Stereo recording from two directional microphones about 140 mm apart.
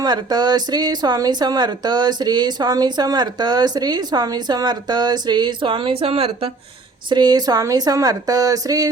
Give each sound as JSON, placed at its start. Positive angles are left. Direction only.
{"t": 0.0, "sound": "a woman's voice", "side_deg": -30}
{"t": 7.1, "sound": "a woman's voice", "side_deg": -30}